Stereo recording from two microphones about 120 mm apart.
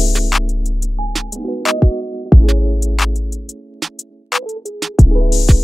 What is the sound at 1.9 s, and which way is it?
Music, 50° left (ahead or behind).